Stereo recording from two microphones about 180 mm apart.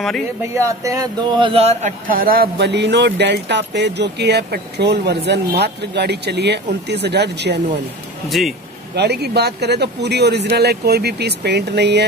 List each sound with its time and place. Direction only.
0.6 s speech: 15° right (ahead or behind)
1.5 s speech: 35° right (ahead or behind); by 7.6 s 70° right (ahead or behind)
8.3 s speech: centre (ahead or behind)
8.9 s speech: 65° right (ahead or behind)